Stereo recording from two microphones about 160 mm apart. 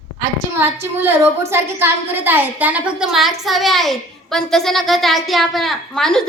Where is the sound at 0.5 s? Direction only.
15° right (ahead or behind).